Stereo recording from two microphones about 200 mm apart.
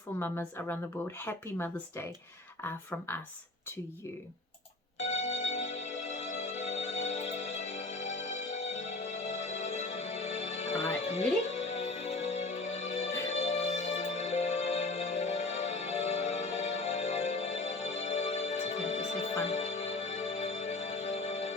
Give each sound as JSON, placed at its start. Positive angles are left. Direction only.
{"t": 0.2, "sound": "speech", "side_deg": 10}
{"t": 4.9, "sound": "music", "side_deg": 30}